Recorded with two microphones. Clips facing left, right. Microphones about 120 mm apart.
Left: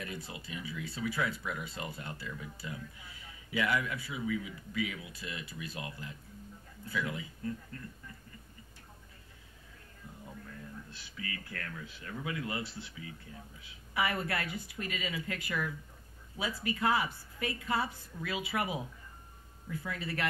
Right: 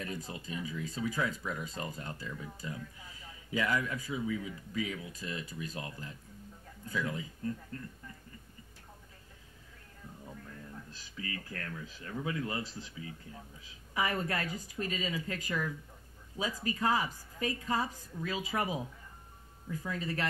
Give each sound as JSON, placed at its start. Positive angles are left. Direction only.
{"t": 0.0, "sound": "speech", "side_deg": -35}
{"t": 10.9, "sound": "speech", "side_deg": -35}
{"t": 19.7, "sound": "speech", "side_deg": -35}